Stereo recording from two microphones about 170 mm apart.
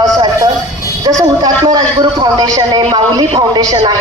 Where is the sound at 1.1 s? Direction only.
20° right (ahead or behind).